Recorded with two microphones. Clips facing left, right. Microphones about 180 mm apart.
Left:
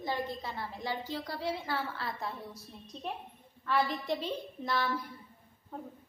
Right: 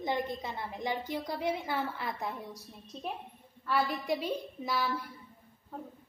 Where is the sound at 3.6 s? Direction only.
10° right (ahead or behind).